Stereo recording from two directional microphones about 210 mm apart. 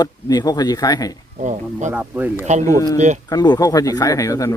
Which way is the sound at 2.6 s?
15° left (ahead or behind).